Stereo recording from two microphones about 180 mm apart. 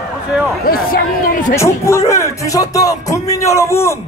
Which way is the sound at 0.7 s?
55° left (ahead or behind).